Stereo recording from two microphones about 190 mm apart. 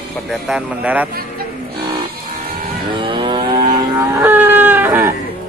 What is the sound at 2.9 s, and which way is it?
Moo, 25° right (ahead or behind).